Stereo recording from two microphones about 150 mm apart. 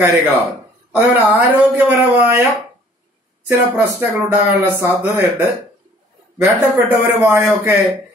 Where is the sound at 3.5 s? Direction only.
15° right (ahead or behind).